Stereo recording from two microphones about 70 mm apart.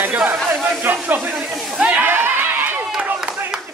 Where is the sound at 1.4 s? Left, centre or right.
Centre.